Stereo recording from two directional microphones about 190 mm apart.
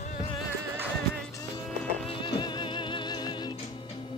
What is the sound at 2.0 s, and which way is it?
Music, 25° left (ahead or behind).